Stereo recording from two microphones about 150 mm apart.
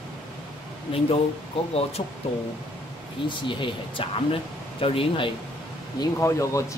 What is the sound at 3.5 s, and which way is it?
Speech, 35° left (ahead or behind).